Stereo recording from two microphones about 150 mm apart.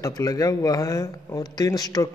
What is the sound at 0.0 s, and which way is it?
Speech, 25° left (ahead or behind).